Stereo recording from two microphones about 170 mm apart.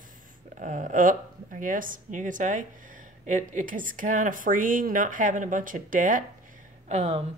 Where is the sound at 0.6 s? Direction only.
50° right (ahead or behind).